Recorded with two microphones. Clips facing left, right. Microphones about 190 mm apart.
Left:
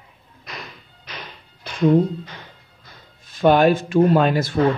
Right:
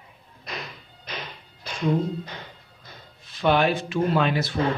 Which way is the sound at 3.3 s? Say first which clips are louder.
Left 6 dB; 45° left (ahead or behind).